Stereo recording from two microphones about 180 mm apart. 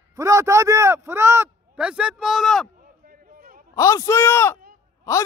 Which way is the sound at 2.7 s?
50° right (ahead or behind).